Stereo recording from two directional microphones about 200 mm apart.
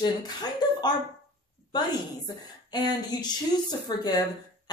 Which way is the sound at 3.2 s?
20° left (ahead or behind).